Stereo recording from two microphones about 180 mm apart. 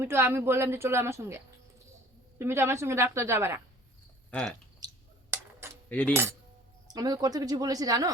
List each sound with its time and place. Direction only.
0.0 s a woman's voice: 15° right (ahead or behind)
2.4 s a woman's voice: 15° right (ahead or behind)
4.3 s speech: 5° left (ahead or behind)
4.8 s finger snapping: 20° right (ahead or behind)
5.9 s cutlery: 10° left (ahead or behind)
6.8 s speech: 20° right (ahead or behind)